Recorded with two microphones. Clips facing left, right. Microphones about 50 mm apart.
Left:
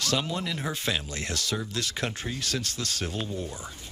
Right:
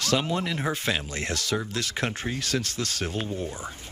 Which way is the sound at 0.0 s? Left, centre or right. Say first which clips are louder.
Right 3 dB; right.